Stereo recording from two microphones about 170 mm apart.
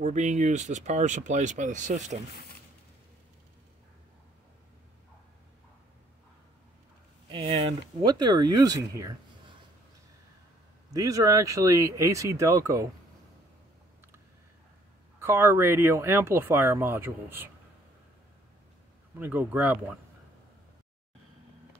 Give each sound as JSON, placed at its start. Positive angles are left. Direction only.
{"t": 0.0, "sound": "speech", "side_deg": -45}
{"t": 7.2, "sound": "speech", "side_deg": -30}
{"t": 10.9, "sound": "speech", "side_deg": -20}
{"t": 15.1, "sound": "speech", "side_deg": -15}
{"t": 19.1, "sound": "speech", "side_deg": -10}